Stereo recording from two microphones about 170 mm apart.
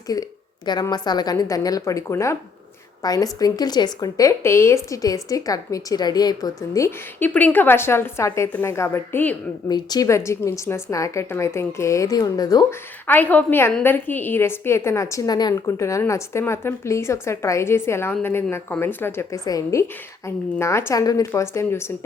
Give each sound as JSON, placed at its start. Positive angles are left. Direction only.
{"t": 0.1, "sound": "a woman's voice", "side_deg": 25}
{"t": 9.6, "sound": "a woman's voice", "side_deg": 25}
{"t": 13.1, "sound": "a woman's voice", "side_deg": 10}